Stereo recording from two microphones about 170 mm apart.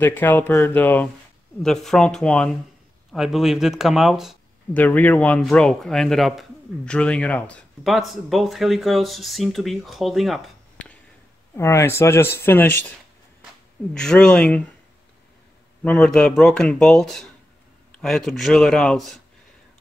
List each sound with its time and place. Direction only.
0.0 s a man's voice: 10° left (ahead or behind)
4.7 s a man's voice: 10° left (ahead or behind)
11.5 s speech: 15° left (ahead or behind)
13.9 s a man's voice: 5° left (ahead or behind)
15.8 s a man's voice: 5° left (ahead or behind)